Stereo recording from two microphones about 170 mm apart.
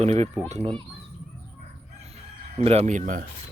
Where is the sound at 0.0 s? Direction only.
40° right (ahead or behind).